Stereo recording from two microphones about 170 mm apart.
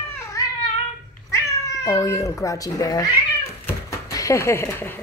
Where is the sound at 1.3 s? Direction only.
20° left (ahead or behind).